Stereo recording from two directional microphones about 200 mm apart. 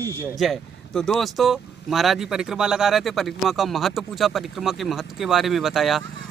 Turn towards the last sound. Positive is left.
turn(degrees=0)  # may be behind; listen again after turning